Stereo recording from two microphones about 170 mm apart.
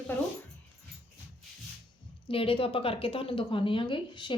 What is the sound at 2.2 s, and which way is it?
A woman's voice, 30° left (ahead or behind).